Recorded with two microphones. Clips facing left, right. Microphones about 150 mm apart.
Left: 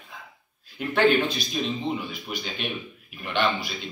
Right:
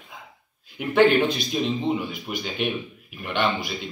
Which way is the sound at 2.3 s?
15° right (ahead or behind).